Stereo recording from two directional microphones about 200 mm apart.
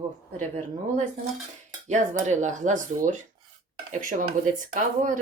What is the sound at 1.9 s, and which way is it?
Speech, 35° right (ahead or behind).